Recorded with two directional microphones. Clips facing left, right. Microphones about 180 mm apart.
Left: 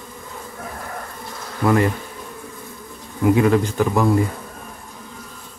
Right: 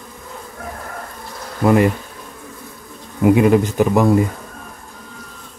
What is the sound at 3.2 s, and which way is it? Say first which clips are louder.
Speech: right 3 dB; 15° right (ahead or behind).